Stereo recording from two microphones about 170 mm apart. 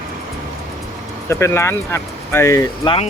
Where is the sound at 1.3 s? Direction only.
15° left (ahead or behind).